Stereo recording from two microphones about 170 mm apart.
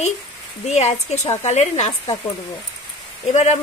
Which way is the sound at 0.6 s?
40° left (ahead or behind).